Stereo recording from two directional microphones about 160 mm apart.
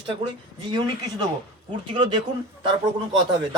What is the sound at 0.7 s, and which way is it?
Speech, 25° right (ahead or behind).